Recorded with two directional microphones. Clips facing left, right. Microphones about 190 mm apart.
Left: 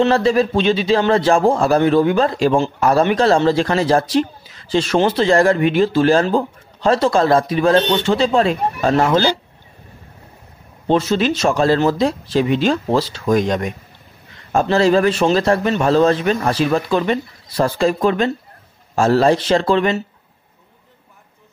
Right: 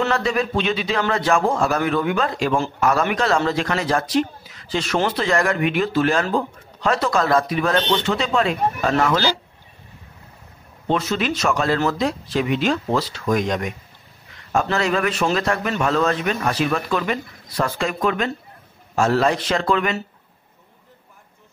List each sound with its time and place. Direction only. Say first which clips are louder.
0.0 s a man's voice: left 7 dB; 30° left (ahead or behind)
10.9 s a man's voice: left 5 dB; 30° left (ahead or behind)